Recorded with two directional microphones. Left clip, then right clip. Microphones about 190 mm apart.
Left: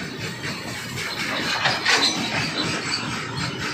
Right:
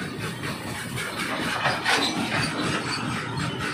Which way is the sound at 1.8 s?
55° right (ahead or behind).